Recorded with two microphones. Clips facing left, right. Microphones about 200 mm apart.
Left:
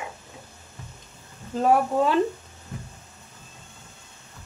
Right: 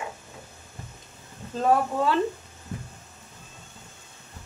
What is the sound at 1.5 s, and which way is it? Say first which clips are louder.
Speech: left 2 dB; 15° left (ahead or behind).